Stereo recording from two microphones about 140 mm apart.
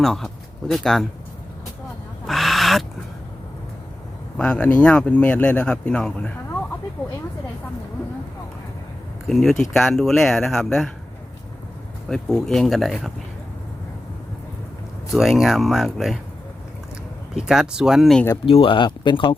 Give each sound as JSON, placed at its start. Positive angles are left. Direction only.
{"t": 0.0, "sound": "speech", "side_deg": 0}
{"t": 2.2, "sound": "goose", "side_deg": 0}
{"t": 4.4, "sound": "speech", "side_deg": 5}
{"t": 9.2, "sound": "speech", "side_deg": 0}
{"t": 12.0, "sound": "speech", "side_deg": 5}
{"t": 15.1, "sound": "speech", "side_deg": 0}
{"t": 17.3, "sound": "speech", "side_deg": -5}
{"t": 18.4, "sound": "speech", "side_deg": 40}